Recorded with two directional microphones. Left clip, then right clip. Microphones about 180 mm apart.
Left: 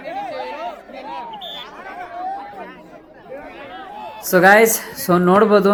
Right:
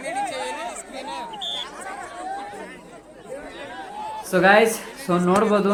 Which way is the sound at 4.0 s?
60° left (ahead or behind).